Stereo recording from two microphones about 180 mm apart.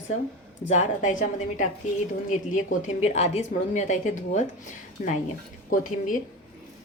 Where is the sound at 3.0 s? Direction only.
35° left (ahead or behind).